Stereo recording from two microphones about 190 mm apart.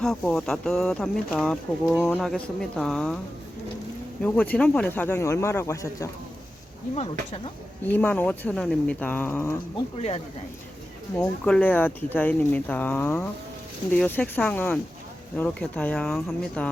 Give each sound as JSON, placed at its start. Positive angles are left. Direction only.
{"t": 0.0, "sound": "speech", "side_deg": 0}
{"t": 4.2, "sound": "speech", "side_deg": 0}
{"t": 6.9, "sound": "speech", "side_deg": 30}
{"t": 7.9, "sound": "speech", "side_deg": 10}
{"t": 11.2, "sound": "speech", "side_deg": 10}